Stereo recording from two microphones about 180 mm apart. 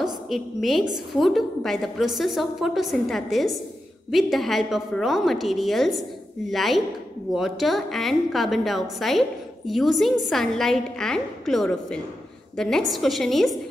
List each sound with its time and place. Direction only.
0.0 s a woman's voice: centre (ahead or behind)